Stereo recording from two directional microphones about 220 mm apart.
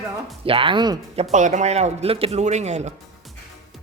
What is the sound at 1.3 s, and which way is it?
A man's voice, 35° right (ahead or behind).